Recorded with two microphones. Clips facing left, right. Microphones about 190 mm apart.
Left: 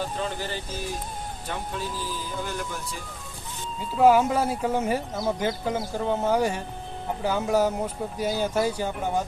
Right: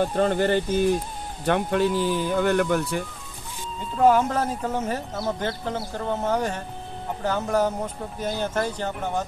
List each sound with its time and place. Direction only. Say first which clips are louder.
0.1 s speech: right 10 dB; 55° right (ahead or behind)
3.8 s speech: even; 5° left (ahead or behind)